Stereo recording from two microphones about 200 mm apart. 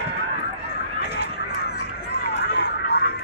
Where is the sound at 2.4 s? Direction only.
55° left (ahead or behind).